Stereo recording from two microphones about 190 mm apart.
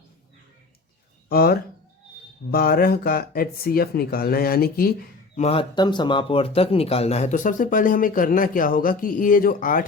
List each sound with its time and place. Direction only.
1.3 s speech: 50° left (ahead or behind)
5.4 s speech: 30° left (ahead or behind); by 9.8 s 45° left (ahead or behind)